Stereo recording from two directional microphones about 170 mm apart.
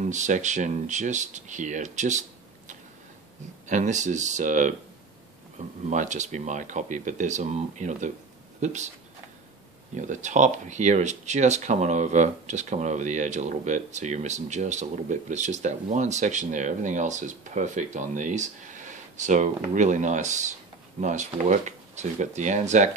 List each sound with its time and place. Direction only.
0.0 s speech: 45° right (ahead or behind)
3.6 s speech: 45° right (ahead or behind)
5.9 s speech: 45° right (ahead or behind)
9.9 s speech: 45° right (ahead or behind)